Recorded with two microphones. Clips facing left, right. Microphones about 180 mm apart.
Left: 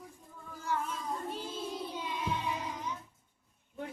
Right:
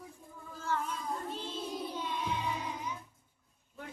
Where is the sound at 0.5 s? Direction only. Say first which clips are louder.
Even; 15° left (ahead or behind).